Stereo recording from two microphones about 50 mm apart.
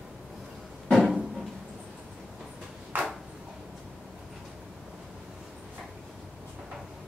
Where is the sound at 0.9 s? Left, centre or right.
Centre.